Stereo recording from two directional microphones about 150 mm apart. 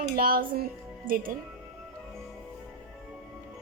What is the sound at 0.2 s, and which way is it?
Speech, 75° right (ahead or behind).